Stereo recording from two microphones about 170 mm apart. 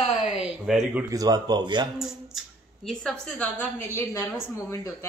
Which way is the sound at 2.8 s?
5° left (ahead or behind).